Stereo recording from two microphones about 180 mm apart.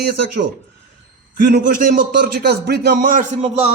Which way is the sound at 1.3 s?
55° right (ahead or behind).